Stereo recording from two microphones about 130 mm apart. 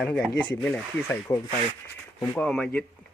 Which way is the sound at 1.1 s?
15° left (ahead or behind).